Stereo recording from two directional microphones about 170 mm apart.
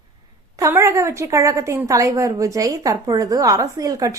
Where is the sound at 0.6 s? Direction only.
15° right (ahead or behind).